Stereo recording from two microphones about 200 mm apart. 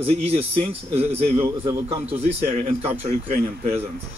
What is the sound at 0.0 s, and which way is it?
A man's voice, 30° right (ahead or behind).